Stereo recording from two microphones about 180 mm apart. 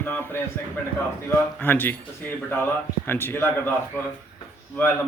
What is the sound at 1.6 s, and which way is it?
Speech, 10° left (ahead or behind).